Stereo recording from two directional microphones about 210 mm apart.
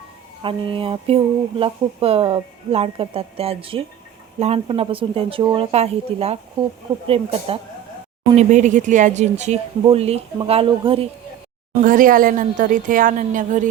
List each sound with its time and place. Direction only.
0.4 s a sound: 25° right (ahead or behind)
8.4 s speech: 35° right (ahead or behind)
11.8 s speech: 40° right (ahead or behind)